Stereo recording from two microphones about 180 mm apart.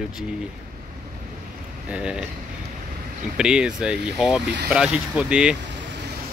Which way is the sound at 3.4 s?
5° right (ahead or behind).